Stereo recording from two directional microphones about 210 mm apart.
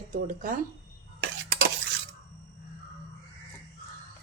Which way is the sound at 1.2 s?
55° right (ahead or behind).